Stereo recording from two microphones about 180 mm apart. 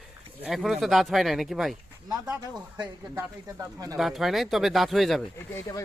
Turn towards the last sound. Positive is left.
turn(degrees=15)  # may be behind; listen again after turning